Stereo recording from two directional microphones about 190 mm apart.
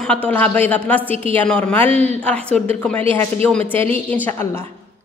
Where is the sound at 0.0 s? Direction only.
5° left (ahead or behind).